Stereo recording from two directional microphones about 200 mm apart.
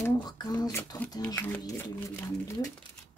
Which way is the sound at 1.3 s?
15° left (ahead or behind).